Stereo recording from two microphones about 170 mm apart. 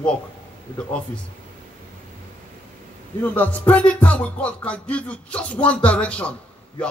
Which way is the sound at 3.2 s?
10° left (ahead or behind).